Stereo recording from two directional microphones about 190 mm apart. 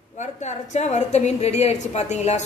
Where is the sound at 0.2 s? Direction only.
35° left (ahead or behind).